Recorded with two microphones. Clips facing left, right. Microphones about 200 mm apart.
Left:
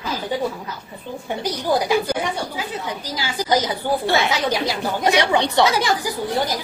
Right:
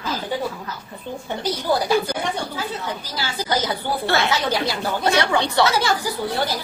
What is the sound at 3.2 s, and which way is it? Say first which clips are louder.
Speech: left 4 dB; 15° left (ahead or behind).